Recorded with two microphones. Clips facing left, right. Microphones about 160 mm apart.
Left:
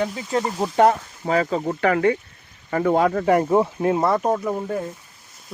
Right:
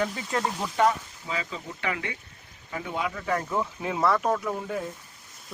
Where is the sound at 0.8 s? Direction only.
55° left (ahead or behind).